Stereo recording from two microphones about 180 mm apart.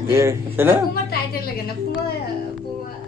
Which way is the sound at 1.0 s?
55° left (ahead or behind).